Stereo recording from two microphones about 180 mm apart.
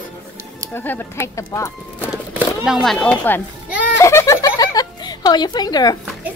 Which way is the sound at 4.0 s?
15° left (ahead or behind).